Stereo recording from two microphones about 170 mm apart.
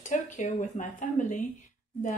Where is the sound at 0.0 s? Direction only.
50° left (ahead or behind).